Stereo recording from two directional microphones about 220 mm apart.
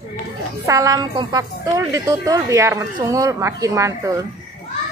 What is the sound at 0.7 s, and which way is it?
Speech, 15° right (ahead or behind).